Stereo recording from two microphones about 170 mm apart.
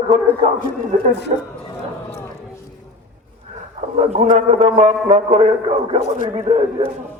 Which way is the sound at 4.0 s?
40° right (ahead or behind).